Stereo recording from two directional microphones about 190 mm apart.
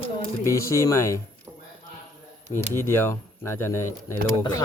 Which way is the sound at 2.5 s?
10° left (ahead or behind).